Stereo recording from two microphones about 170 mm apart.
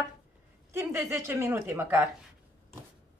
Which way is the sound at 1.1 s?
15° right (ahead or behind).